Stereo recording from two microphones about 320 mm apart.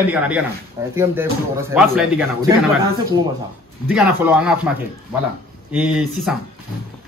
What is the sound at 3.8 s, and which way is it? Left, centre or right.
A man's voice, centre.